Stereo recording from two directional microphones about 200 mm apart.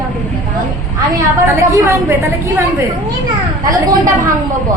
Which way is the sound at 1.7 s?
15° right (ahead or behind).